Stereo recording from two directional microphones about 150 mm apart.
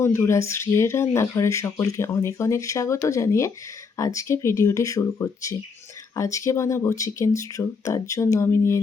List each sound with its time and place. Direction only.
0.0 s speech: 20° left (ahead or behind)